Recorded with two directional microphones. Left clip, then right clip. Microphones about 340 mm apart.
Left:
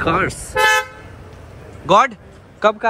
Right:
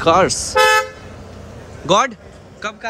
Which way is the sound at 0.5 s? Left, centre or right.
Right.